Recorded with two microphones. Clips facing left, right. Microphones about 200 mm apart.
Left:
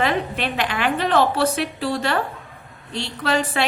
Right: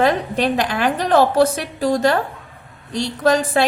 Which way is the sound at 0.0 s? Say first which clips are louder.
Right 5 dB; 40° right (ahead or behind).